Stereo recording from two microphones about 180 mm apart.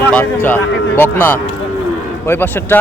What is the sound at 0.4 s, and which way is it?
Speech, 10° left (ahead or behind).